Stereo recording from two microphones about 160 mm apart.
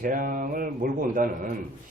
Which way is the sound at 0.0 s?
60° right (ahead or behind).